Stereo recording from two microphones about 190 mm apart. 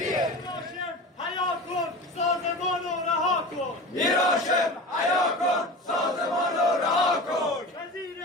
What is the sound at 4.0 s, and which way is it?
Battle cry, centre (ahead or behind).